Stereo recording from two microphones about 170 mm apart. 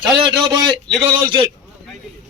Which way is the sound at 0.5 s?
25° right (ahead or behind).